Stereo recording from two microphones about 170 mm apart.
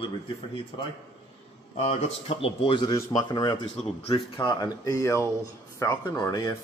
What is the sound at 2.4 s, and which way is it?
Speech, 30° left (ahead or behind).